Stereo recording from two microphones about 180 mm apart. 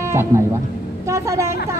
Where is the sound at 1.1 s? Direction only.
15° right (ahead or behind).